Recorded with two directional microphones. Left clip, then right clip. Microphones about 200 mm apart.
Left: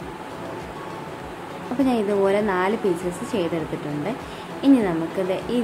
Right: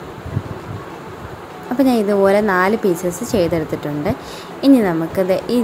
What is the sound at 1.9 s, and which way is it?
A woman's voice, 20° right (ahead or behind).